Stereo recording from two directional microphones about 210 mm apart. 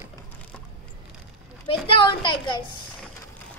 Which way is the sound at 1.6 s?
25° left (ahead or behind).